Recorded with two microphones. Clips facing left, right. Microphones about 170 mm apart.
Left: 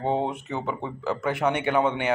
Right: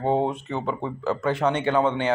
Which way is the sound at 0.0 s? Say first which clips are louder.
Right 3 dB; 15° right (ahead or behind).